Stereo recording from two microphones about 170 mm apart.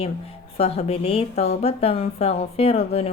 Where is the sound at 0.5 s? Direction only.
40° left (ahead or behind).